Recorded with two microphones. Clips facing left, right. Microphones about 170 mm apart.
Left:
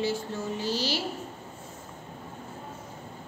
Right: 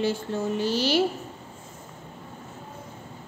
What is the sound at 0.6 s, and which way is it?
Speech, 55° right (ahead or behind).